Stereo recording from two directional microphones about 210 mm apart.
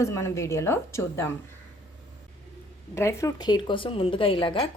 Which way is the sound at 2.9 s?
15° left (ahead or behind).